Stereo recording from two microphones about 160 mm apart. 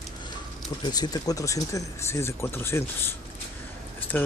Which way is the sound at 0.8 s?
25° left (ahead or behind).